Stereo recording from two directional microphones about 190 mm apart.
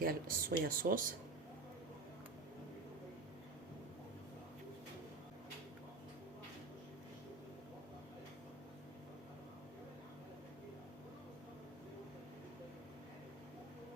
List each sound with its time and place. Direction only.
0.0 s speech: 50° right (ahead or behind)